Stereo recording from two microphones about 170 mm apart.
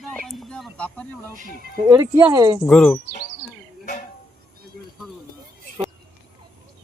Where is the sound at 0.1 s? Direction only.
5° left (ahead or behind).